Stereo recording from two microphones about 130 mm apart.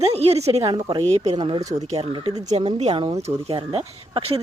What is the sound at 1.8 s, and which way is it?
Speech, 60° right (ahead or behind).